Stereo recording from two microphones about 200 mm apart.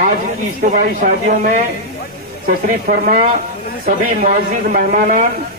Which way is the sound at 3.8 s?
40° right (ahead or behind).